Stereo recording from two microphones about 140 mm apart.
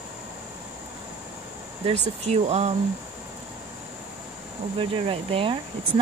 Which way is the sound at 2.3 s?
50° right (ahead or behind).